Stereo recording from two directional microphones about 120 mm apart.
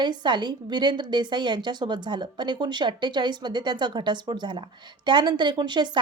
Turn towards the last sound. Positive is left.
turn(degrees=-40)  # may be behind; listen again after turning